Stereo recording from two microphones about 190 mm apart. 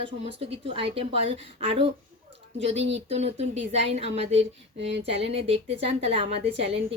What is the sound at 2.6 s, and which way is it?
A woman's voice, 35° right (ahead or behind).